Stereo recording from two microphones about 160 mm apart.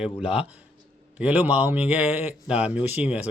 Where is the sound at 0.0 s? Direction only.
5° right (ahead or behind).